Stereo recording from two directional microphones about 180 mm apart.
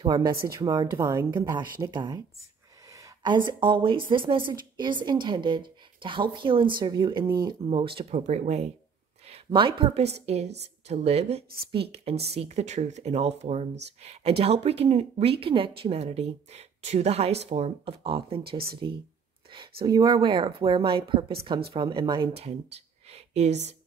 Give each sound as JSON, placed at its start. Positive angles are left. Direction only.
{"t": 0.0, "sound": "a woman's voice", "side_deg": -25}
{"t": 9.3, "sound": "a woman's voice", "side_deg": -30}